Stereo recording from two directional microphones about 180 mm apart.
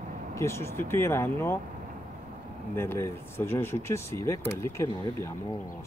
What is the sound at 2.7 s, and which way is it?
Speech, 15° left (ahead or behind).